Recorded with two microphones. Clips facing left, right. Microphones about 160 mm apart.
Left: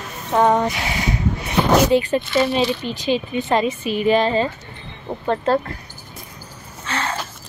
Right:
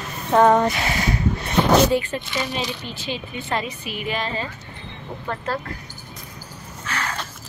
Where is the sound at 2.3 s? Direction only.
15° right (ahead or behind).